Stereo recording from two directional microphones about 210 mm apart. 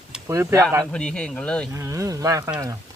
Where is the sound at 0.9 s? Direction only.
5° left (ahead or behind).